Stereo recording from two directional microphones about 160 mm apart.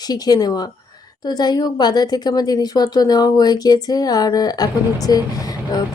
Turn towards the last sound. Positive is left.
turn(degrees=25)  # may be behind; listen again after turning